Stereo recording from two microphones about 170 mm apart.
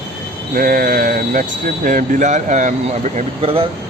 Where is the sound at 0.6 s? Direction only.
60° right (ahead or behind).